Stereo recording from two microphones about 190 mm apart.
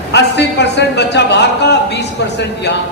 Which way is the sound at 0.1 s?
65° left (ahead or behind).